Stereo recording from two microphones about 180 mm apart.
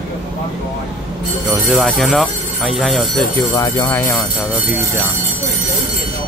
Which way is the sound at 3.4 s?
20° left (ahead or behind).